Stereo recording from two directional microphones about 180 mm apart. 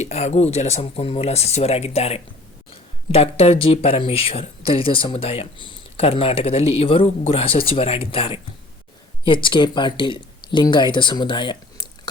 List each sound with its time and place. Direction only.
0.0 s speech: 40° left (ahead or behind)